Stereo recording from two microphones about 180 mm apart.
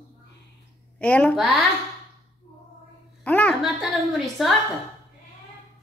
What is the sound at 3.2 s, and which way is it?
A woman's voice, 10° left (ahead or behind).